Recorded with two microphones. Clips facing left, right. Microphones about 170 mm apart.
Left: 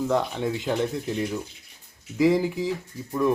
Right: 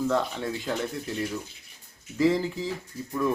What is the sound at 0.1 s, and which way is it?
Speech, 15° left (ahead or behind).